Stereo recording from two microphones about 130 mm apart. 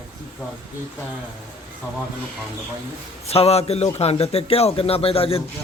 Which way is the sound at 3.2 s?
50° left (ahead or behind).